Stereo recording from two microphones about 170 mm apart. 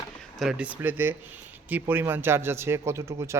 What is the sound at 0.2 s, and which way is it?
Speech, centre (ahead or behind).